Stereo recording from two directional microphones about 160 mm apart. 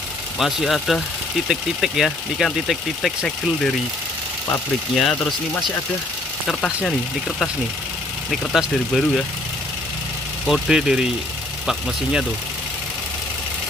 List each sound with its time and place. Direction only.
0.4 s speech: centre (ahead or behind)
4.9 s speech: centre (ahead or behind)
8.3 s speech: centre (ahead or behind)
10.4 s speech: centre (ahead or behind)